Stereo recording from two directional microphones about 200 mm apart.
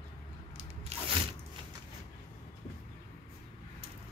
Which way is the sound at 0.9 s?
30° right (ahead or behind).